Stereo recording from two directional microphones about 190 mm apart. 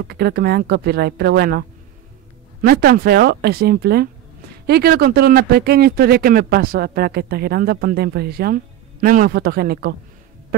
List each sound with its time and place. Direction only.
0.0 s speech: 55° right (ahead or behind)
2.6 s speech: 55° right (ahead or behind)